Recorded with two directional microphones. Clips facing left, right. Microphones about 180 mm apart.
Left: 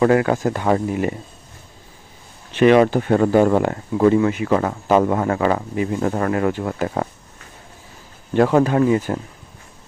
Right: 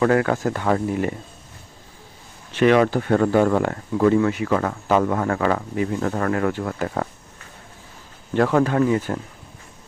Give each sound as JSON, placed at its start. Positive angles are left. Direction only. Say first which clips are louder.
{"t": 0.0, "sound": "speech", "louder": "left 3 dB", "side_deg": 20}
{"t": 2.5, "sound": "speech", "louder": "left 3 dB", "side_deg": 20}
{"t": 8.4, "sound": "speech", "louder": "left 3 dB", "side_deg": 20}